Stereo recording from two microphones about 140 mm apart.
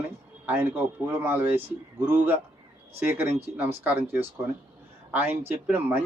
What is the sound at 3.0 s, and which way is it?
A man's voice, 15° right (ahead or behind).